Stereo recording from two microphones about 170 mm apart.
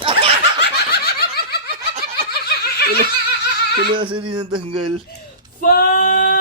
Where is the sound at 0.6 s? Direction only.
70° left (ahead or behind).